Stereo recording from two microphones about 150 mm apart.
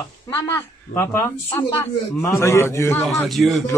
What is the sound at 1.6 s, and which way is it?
A man's voice, 15° left (ahead or behind).